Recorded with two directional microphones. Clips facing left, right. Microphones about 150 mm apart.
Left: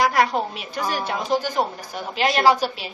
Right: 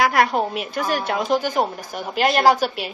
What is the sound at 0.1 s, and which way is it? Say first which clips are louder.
Speech: right 2 dB; 55° right (ahead or behind).